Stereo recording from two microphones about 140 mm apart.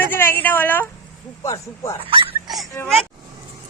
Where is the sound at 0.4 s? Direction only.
15° left (ahead or behind).